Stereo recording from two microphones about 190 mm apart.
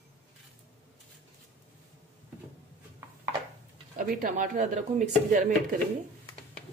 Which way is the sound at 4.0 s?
45° right (ahead or behind).